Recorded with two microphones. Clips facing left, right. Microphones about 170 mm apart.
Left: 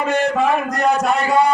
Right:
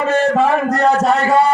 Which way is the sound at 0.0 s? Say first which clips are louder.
Right 3 dB; 15° left (ahead or behind).